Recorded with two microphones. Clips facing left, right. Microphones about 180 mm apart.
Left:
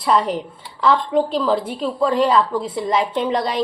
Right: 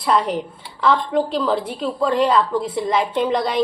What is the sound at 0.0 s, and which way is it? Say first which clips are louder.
A woman's voice: left 1 dB; centre (ahead or behind).